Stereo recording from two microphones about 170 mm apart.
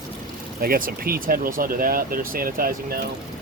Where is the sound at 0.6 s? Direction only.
60° right (ahead or behind).